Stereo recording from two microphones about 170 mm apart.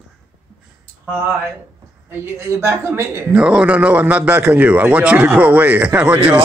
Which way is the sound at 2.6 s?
15° right (ahead or behind).